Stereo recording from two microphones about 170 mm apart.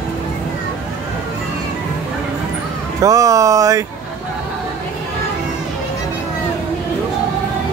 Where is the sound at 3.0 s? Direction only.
20° right (ahead or behind).